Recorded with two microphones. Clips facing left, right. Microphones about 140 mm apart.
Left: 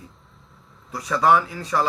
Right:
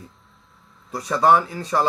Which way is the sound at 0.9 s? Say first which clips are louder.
Right 1 dB; 25° right (ahead or behind).